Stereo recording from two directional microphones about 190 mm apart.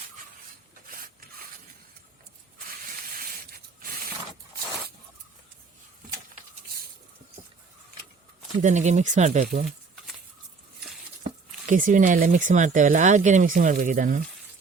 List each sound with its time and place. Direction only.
0.9 s rub: 50° right (ahead or behind)
3.2 s a sound: 50° right (ahead or behind)
8.5 s speech: 40° right (ahead or behind)
11.7 s speech: 45° right (ahead or behind)